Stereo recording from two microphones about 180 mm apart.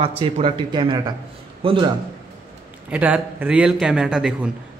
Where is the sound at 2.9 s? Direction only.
10° right (ahead or behind).